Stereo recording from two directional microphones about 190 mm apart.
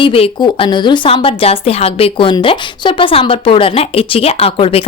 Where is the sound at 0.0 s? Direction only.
25° left (ahead or behind).